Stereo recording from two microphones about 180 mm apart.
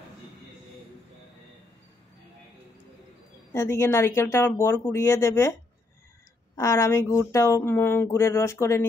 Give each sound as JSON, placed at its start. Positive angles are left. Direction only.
{"t": 3.5, "sound": "speech", "side_deg": 15}
{"t": 6.5, "sound": "speech", "side_deg": 15}